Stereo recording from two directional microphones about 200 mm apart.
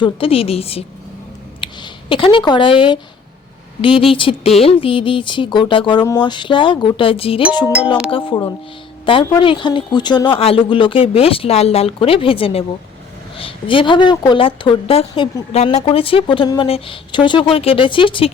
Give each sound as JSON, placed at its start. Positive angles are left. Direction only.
{"t": 0.0, "sound": "speech", "side_deg": 30}